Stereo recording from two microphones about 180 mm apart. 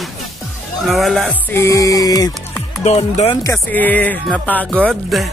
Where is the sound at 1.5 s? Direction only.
15° left (ahead or behind).